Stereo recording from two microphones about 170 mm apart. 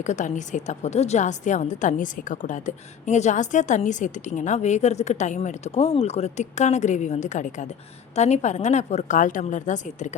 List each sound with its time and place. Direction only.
0.0 s a woman's voice: 45° left (ahead or behind)